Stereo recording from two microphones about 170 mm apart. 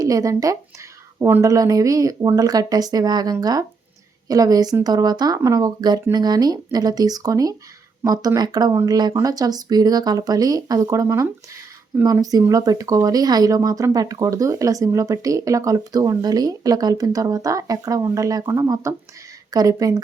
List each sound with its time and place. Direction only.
0.0 s speech: 20° right (ahead or behind)